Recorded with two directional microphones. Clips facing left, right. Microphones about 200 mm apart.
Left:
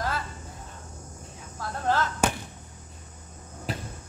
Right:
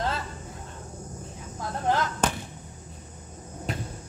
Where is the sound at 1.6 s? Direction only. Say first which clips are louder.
Even; 15° right (ahead or behind).